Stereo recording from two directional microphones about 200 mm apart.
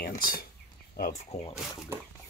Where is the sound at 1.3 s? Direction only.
35° left (ahead or behind).